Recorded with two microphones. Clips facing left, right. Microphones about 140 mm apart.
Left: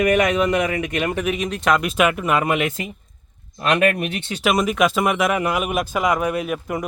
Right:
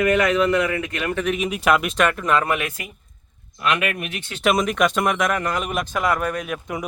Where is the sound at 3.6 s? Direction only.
35° left (ahead or behind).